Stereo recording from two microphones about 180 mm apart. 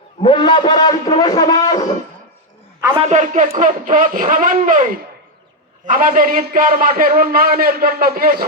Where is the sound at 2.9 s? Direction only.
35° right (ahead or behind).